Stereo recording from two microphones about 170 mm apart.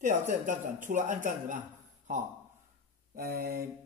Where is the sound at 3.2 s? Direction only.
60° right (ahead or behind).